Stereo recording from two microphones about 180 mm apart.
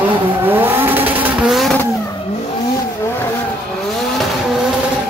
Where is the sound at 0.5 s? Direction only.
10° right (ahead or behind).